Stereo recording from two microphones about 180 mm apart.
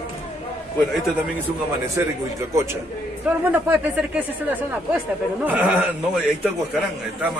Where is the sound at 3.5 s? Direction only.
10° right (ahead or behind).